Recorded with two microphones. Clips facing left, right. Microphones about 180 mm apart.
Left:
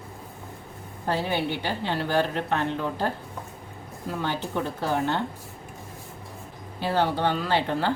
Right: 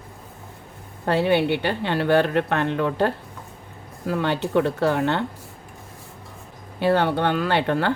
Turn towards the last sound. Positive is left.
turn(degrees=-60)  # may be behind; listen again after turning